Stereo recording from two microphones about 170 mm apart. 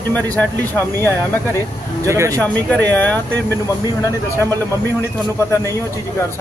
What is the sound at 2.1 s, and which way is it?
Speech, 15° right (ahead or behind).